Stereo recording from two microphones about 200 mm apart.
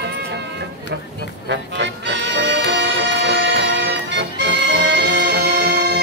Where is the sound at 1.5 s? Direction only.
60° right (ahead or behind).